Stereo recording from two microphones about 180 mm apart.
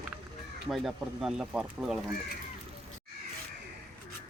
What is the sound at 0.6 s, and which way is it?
Speech, centre (ahead or behind).